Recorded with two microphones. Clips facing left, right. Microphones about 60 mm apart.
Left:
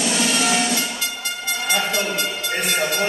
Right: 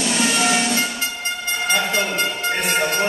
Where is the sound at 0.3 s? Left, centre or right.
Centre.